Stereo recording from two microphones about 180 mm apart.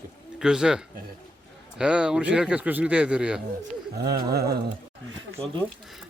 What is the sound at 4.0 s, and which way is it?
Speech, 65° right (ahead or behind).